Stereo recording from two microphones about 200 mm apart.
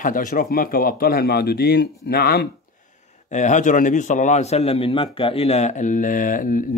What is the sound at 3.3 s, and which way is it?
A man's voice, 35° left (ahead or behind).